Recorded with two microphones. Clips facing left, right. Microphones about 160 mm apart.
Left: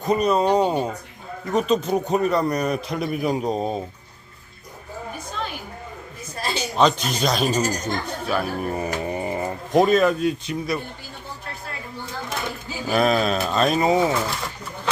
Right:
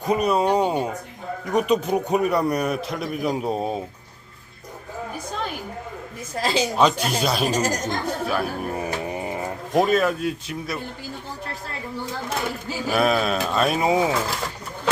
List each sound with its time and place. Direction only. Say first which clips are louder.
0.0 s a man's voice: left 1 dB; 10° right (ahead or behind)
6.3 s a sound: right 5 dB; 90° right
6.7 s speech: left 4 dB; 10° right (ahead or behind)
7.5 s speech: even; 90° right
8.0 s speech: right 1 dB; centre (ahead or behind)
12.9 s a man's voice: left 1 dB; 5° right (ahead or behind)